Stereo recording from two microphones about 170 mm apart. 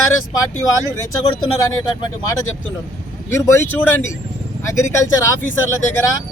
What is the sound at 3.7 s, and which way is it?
Speech, 10° left (ahead or behind).